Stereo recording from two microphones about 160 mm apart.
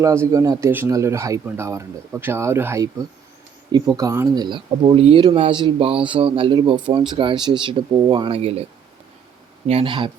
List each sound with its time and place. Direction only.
0.0 s a man's voice: 20° right (ahead or behind)
8.4 s a man's voice: 40° right (ahead or behind)
9.6 s a man's voice: 35° right (ahead or behind)